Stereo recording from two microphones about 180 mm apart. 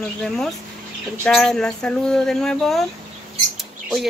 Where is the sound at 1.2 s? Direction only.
5° left (ahead or behind).